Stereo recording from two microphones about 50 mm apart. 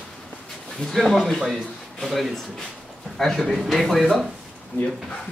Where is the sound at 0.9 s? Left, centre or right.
Centre.